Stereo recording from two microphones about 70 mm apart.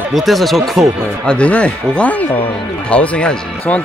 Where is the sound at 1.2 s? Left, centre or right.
Centre.